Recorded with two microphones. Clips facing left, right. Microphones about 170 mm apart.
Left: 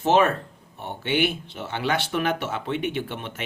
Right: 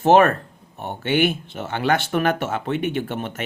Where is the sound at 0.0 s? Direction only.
50° right (ahead or behind).